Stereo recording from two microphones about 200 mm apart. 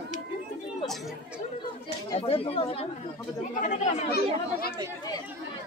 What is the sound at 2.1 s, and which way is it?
Speech, 30° left (ahead or behind).